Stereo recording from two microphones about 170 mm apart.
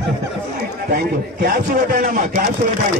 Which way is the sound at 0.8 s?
65° right (ahead or behind).